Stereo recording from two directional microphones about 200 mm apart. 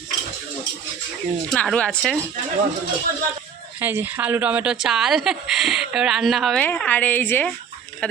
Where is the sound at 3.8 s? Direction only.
10° right (ahead or behind).